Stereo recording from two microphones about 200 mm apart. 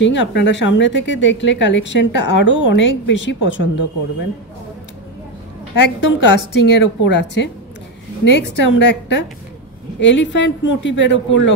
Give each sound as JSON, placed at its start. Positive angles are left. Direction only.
{"t": 0.0, "sound": "speech", "side_deg": 65}
{"t": 5.8, "sound": "speech", "side_deg": 70}